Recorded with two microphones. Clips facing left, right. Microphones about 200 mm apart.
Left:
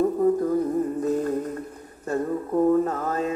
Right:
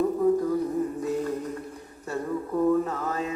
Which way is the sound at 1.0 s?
50° left (ahead or behind).